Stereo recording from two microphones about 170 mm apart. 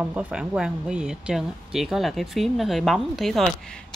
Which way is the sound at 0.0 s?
10° right (ahead or behind).